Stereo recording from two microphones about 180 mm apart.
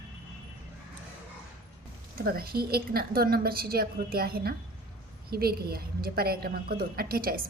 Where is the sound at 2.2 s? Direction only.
55° right (ahead or behind).